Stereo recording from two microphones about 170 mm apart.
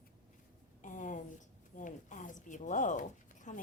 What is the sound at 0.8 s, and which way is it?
A woman's voice, 50° left (ahead or behind).